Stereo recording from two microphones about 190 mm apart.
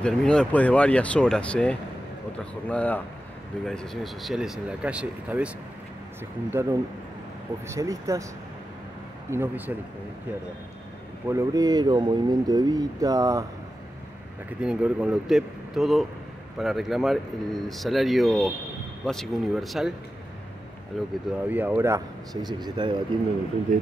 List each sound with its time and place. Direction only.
0.0 s speech: 5° left (ahead or behind)
6.5 s speech: 15° right (ahead or behind)
9.3 s speech: 10° right (ahead or behind)
11.2 s speech: 15° right (ahead or behind)
14.6 s speech: 5° right (ahead or behind)
20.9 s speech: centre (ahead or behind)
21.5 s speech: 10° right (ahead or behind)
23.7 s speech: 40° right (ahead or behind)